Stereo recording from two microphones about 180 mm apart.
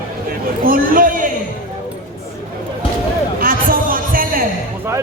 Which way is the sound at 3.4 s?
50° right (ahead or behind).